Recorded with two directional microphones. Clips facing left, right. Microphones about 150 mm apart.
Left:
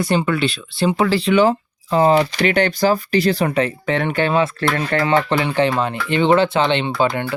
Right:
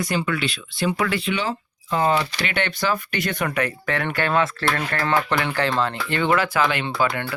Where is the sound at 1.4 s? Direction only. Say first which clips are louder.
Left 12 dB; 45° left (ahead or behind).